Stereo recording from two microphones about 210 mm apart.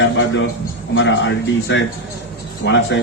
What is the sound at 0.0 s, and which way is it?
A man's voice, 60° left (ahead or behind).